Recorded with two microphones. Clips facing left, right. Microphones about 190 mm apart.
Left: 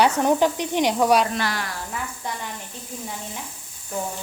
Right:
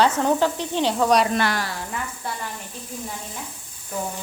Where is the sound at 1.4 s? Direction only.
60° right (ahead or behind).